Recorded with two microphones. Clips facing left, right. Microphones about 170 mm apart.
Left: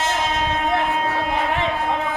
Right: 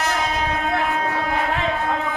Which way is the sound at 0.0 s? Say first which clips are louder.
Left 1 dB; 25° left (ahead or behind).